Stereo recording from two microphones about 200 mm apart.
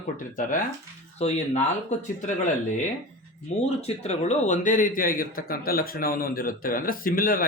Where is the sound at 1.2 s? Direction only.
35° left (ahead or behind).